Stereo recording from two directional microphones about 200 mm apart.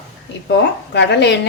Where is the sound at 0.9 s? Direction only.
60° left (ahead or behind).